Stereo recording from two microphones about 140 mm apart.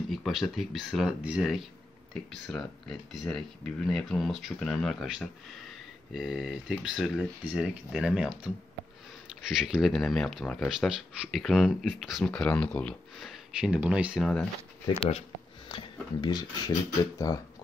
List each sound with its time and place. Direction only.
0.1 s speech: centre (ahead or behind)
9.5 s speech: 5° right (ahead or behind)
13.3 s speech: 10° right (ahead or behind)
14.2 s speech: 5° left (ahead or behind)
15.0 s speech: 50° left (ahead or behind)
15.7 s speech: 35° left (ahead or behind)